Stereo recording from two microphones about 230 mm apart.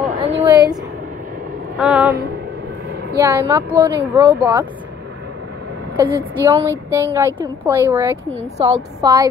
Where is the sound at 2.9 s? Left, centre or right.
Right.